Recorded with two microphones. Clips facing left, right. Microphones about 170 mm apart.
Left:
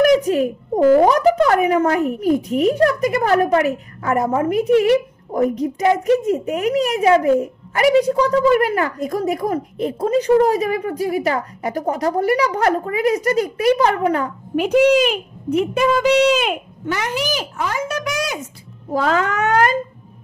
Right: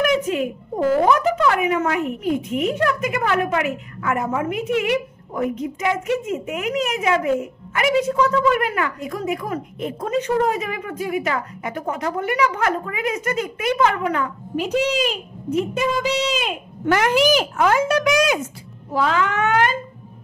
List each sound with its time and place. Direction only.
0.0 s a child's voice: 35° left (ahead or behind)
14.5 s speech: 55° left (ahead or behind)
16.8 s speech: 85° right
18.9 s a child's voice: 40° left (ahead or behind)